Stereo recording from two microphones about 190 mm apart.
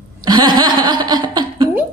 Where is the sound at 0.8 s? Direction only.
25° right (ahead or behind).